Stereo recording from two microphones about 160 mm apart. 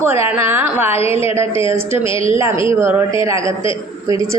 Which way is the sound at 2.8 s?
15° right (ahead or behind).